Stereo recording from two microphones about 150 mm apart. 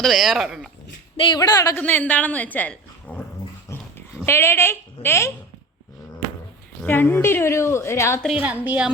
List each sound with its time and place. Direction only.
0.0 s speech: centre (ahead or behind)
1.1 s speech: 35° left (ahead or behind)
1.4 s speech: 25° left (ahead or behind)
1.8 s a woman's voice: 10° left (ahead or behind)
4.3 s a woman's voice: 15° left (ahead or behind)
6.8 s a woman's voice: 15° left (ahead or behind)
8.4 s a woman's voice: 10° right (ahead or behind)